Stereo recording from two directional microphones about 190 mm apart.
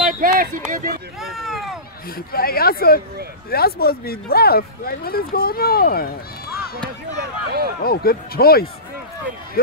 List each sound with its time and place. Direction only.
0.0 s a sound: 45° right (ahead or behind)
0.7 s speech: 45° right (ahead or behind)
1.2 s speech: centre (ahead or behind)
2.1 s speech: 50° left (ahead or behind)
7.2 s speech: 55° right (ahead or behind)
7.8 s speech: 55° left (ahead or behind)